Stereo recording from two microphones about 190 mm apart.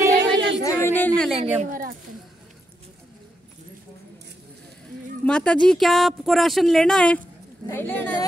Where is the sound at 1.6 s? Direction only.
45° right (ahead or behind).